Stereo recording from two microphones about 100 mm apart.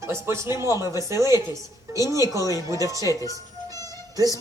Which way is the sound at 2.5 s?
35° right (ahead or behind).